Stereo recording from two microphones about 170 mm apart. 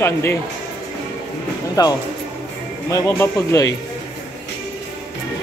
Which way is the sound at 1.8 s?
20° left (ahead or behind).